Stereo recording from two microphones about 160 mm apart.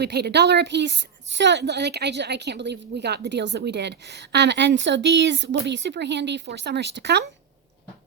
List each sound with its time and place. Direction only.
0.0 s a woman's voice: 90° right